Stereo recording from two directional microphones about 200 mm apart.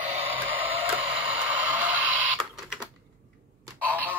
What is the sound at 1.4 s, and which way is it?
Radio, 10° right (ahead or behind).